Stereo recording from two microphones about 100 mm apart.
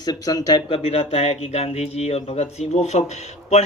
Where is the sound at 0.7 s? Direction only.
90° left.